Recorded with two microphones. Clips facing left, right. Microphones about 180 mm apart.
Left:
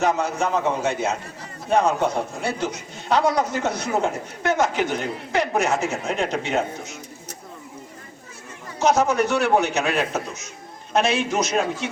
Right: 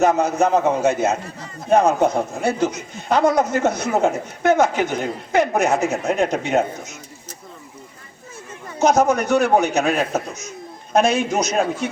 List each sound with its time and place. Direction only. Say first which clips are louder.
0.0 s a man's voice: right 5 dB; 45° right (ahead or behind)
8.8 s a man's voice: right 3 dB; 45° right (ahead or behind)